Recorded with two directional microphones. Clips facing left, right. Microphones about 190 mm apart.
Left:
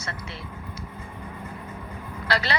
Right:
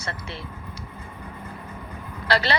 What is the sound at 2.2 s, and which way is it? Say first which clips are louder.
Speech: right 3 dB; 30° right (ahead or behind).